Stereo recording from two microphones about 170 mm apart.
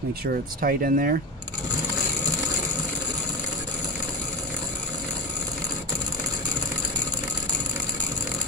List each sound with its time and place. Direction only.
0.6 s speech: 55° right (ahead or behind)